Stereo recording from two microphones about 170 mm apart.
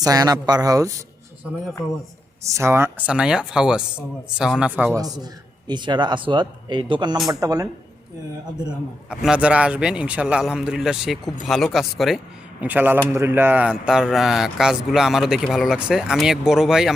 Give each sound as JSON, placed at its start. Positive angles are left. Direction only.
{"t": 0.0, "sound": "speech", "side_deg": -20}
{"t": 2.4, "sound": "speech", "side_deg": -15}
{"t": 5.2, "sound": "speech", "side_deg": -25}
{"t": 9.0, "sound": "speech", "side_deg": -5}